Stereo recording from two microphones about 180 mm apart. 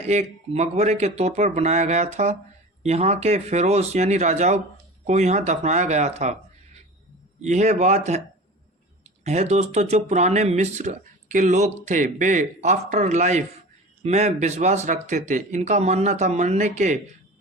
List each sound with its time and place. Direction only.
0.0 s speech: 40° right (ahead or behind)
7.4 s speech: 40° right (ahead or behind)
9.2 s speech: 40° right (ahead or behind)